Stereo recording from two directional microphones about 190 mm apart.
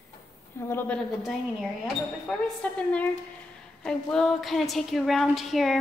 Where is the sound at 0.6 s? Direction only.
10° left (ahead or behind).